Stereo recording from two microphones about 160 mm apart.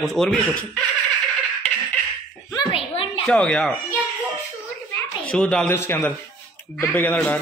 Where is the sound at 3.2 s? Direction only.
5° left (ahead or behind).